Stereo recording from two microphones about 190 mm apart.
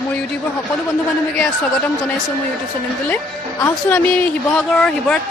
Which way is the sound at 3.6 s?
10° left (ahead or behind).